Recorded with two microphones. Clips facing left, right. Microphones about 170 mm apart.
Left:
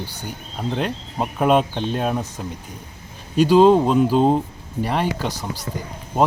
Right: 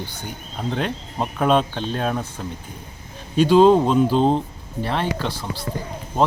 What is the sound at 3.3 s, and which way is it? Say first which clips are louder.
Speech: even; 5° left (ahead or behind).